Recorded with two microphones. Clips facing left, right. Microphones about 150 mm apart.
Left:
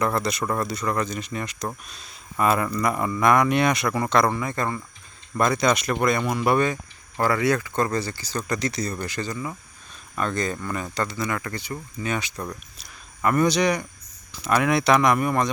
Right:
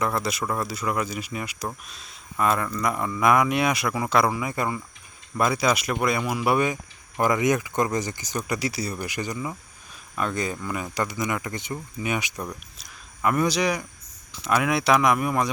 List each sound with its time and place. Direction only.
0.0 s speech: 5° right (ahead or behind)
12.8 s a sound: 5° right (ahead or behind)
14.3 s speech: centre (ahead or behind)